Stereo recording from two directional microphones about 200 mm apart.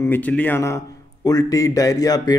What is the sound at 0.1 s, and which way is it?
A man's voice, 10° left (ahead or behind).